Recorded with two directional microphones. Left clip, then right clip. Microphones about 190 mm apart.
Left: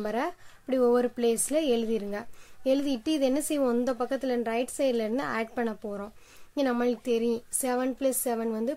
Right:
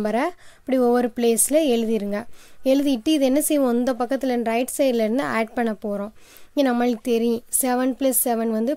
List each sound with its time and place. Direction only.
0.0 s speech: 40° right (ahead or behind)